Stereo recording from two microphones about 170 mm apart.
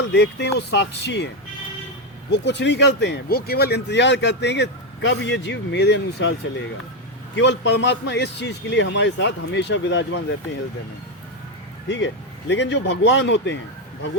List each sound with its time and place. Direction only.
0.1 s speech: 85° left
2.3 s speech: 90° left
7.3 s speech: 90° left
11.9 s speech: 90° left